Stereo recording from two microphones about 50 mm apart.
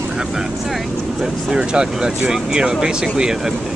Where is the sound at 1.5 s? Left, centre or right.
Centre.